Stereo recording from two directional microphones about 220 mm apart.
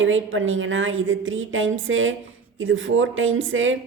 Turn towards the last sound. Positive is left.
turn(degrees=-60)  # may be behind; listen again after turning